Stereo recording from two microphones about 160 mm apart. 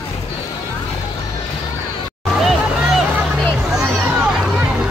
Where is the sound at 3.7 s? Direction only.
5° right (ahead or behind).